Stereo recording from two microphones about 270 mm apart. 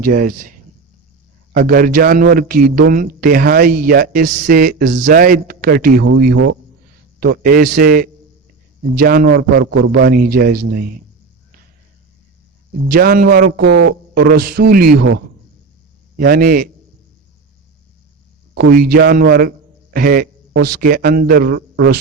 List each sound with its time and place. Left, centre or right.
0.0 s a man's voice: right
1.5 s a man's voice: right
12.9 s a man's voice: right
18.5 s a man's voice: right